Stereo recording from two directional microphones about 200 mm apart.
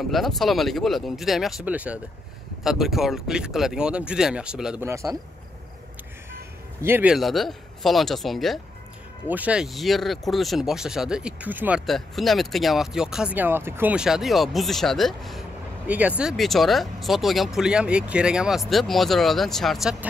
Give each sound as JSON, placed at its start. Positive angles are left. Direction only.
{"t": 0.1, "sound": "speech", "side_deg": 0}
{"t": 6.8, "sound": "speech", "side_deg": -10}